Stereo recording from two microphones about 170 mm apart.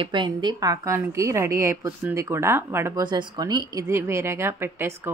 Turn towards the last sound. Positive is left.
turn(degrees=-15)  # may be behind; listen again after turning